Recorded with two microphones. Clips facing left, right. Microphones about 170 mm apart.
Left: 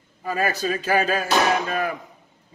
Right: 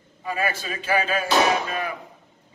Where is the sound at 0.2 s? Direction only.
40° left (ahead or behind).